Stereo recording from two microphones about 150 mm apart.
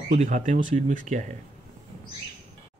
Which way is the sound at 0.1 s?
50° right (ahead or behind).